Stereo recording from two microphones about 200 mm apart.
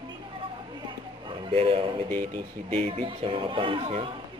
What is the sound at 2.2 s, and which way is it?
Speech, 30° right (ahead or behind).